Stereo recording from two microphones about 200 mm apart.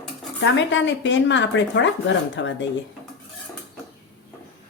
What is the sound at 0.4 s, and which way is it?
Speech, 70° left (ahead or behind).